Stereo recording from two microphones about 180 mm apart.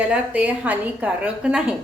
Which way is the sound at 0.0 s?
5° right (ahead or behind).